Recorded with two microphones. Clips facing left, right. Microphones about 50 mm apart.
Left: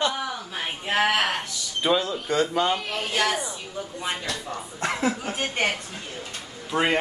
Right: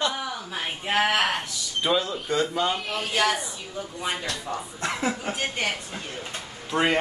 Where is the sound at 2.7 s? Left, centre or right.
Centre.